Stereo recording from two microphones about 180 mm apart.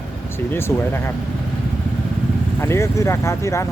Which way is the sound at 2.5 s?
15° left (ahead or behind).